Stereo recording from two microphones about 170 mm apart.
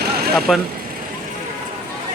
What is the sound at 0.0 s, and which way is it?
Vehicle, 65° right (ahead or behind).